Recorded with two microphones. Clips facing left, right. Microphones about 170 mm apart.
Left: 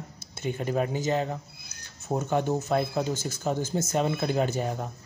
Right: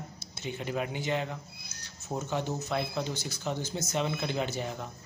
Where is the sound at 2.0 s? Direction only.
55° left (ahead or behind).